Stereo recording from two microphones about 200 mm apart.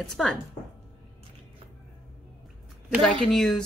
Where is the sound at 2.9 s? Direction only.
Centre (ahead or behind).